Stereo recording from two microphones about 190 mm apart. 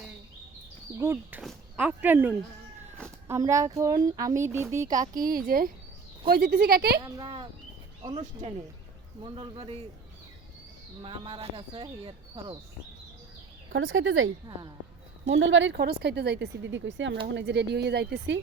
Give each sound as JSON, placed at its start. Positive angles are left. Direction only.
{"t": 0.9, "sound": "a child's voice", "side_deg": -15}
{"t": 5.1, "sound": "a woman's voice", "side_deg": -45}
{"t": 7.0, "sound": "speech", "side_deg": -25}
{"t": 8.0, "sound": "speech", "side_deg": -35}
{"t": 11.0, "sound": "speech", "side_deg": -25}
{"t": 13.7, "sound": "speech", "side_deg": -90}
{"t": 17.3, "sound": "speech", "side_deg": -65}